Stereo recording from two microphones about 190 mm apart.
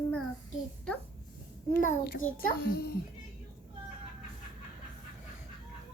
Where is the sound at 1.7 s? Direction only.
50° left (ahead or behind).